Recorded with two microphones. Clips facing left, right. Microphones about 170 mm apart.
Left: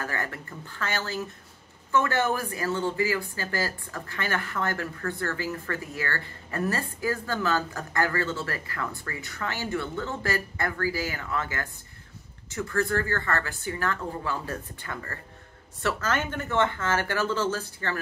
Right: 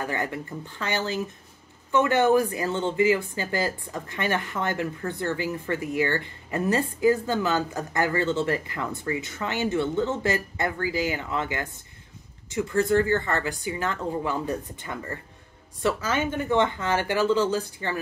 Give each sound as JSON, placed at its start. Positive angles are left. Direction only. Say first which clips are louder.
{"t": 0.0, "sound": "speech", "louder": "right 4 dB", "side_deg": -20}